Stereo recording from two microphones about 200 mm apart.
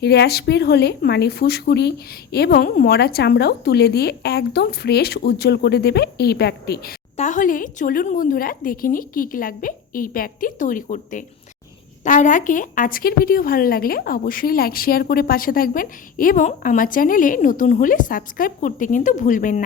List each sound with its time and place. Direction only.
0.0 s speech: 55° left (ahead or behind)
7.2 s speech: 40° left (ahead or behind)